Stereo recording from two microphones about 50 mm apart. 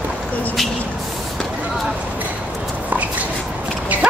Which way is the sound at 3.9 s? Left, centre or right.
Right.